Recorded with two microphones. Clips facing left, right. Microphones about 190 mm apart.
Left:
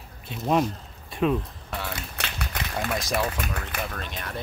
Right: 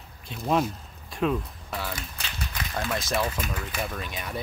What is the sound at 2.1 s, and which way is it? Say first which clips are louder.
Run: left 5 dB; 70° left (ahead or behind).